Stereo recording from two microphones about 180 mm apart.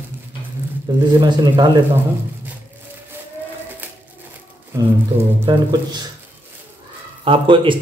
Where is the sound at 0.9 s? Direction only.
25° right (ahead or behind).